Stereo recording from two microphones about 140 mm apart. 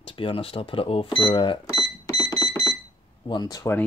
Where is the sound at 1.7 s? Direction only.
25° left (ahead or behind).